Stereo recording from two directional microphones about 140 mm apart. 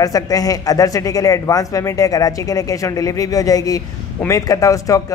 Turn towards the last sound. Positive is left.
turn(degrees=25)  # may be behind; listen again after turning